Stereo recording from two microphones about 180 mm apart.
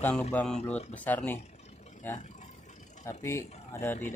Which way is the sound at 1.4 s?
35° left (ahead or behind).